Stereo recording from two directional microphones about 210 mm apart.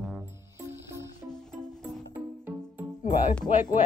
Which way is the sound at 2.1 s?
10° right (ahead or behind).